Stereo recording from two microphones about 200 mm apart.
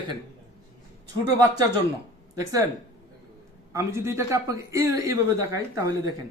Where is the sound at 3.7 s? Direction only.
15° right (ahead or behind).